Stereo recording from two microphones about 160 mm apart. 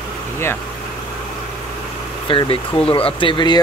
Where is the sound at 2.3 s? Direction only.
35° left (ahead or behind).